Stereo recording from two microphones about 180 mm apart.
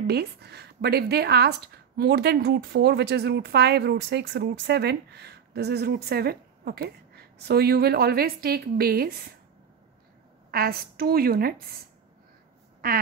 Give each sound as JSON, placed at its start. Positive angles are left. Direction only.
{"t": 0.0, "sound": "speech", "side_deg": -65}
{"t": 10.5, "sound": "speech", "side_deg": -55}
{"t": 12.8, "sound": "a sound", "side_deg": -55}